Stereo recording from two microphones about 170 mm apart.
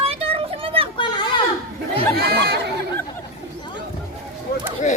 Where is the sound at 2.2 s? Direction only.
70° right (ahead or behind).